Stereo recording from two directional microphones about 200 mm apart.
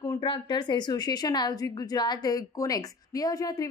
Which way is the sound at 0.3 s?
25° left (ahead or behind).